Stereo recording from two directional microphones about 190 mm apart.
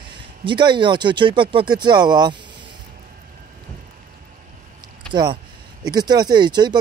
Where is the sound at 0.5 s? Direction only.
25° right (ahead or behind).